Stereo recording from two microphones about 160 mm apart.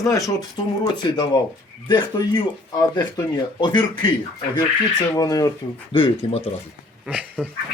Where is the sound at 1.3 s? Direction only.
30° left (ahead or behind).